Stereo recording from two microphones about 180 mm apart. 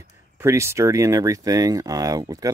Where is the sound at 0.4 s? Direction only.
15° right (ahead or behind).